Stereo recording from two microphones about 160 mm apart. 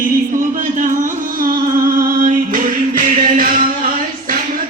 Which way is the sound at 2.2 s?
55° right (ahead or behind).